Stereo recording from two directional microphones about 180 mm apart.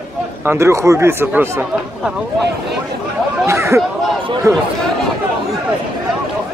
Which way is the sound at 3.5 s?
15° right (ahead or behind).